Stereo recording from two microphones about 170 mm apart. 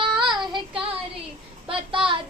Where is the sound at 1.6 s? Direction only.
30° right (ahead or behind).